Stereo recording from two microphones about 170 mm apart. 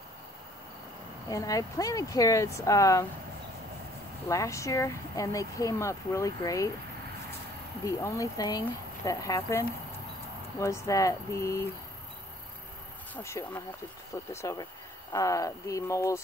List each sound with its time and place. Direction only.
1.3 s speech: 20° left (ahead or behind)
4.3 s speech: 20° left (ahead or behind)
7.8 s speech: 20° left (ahead or behind)
13.1 s speech: 15° left (ahead or behind)